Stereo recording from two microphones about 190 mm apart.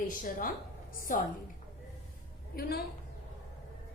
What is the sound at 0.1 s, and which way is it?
Speech, 45° left (ahead or behind).